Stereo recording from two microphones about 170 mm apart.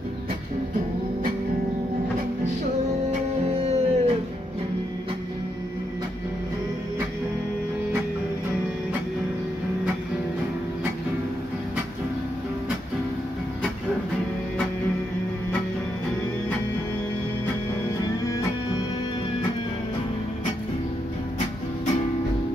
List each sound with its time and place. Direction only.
3.1 s music: 40° right (ahead or behind)